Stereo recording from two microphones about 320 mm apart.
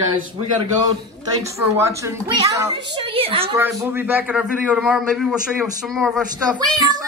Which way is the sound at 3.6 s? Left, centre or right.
Centre.